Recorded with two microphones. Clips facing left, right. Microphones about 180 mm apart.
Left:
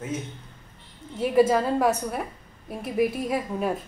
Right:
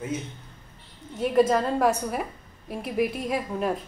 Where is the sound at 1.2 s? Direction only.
5° left (ahead or behind).